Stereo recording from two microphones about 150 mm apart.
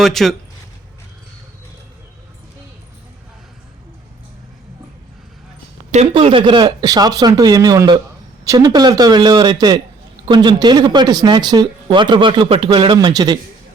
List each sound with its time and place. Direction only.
0.0 s speech: centre (ahead or behind)
5.9 s speech: 40° right (ahead or behind)